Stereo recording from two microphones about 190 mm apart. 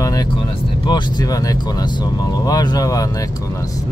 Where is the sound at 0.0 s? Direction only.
20° left (ahead or behind).